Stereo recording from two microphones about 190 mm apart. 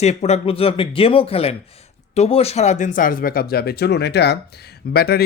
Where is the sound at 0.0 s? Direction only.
35° left (ahead or behind).